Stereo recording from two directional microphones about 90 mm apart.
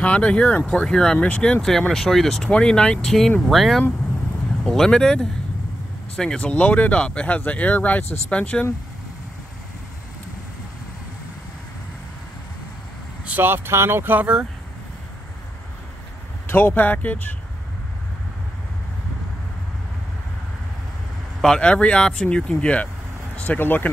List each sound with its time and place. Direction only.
0.0 s speech: 15° left (ahead or behind)
13.2 s speech: 20° right (ahead or behind)
16.4 s speech: 25° left (ahead or behind)
21.4 s speech: 10° left (ahead or behind)